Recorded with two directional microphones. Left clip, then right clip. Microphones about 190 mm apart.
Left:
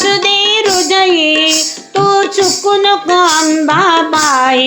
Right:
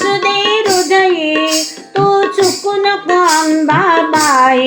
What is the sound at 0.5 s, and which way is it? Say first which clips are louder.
Female singing: even; 50° left (ahead or behind).